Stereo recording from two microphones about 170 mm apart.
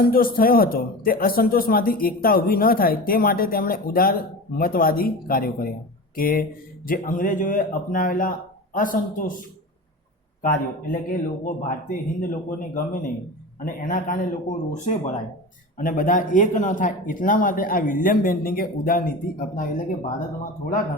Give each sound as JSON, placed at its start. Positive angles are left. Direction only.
{"t": 0.0, "sound": "a man's voice", "side_deg": 60}
{"t": 11.1, "sound": "a man's voice", "side_deg": 50}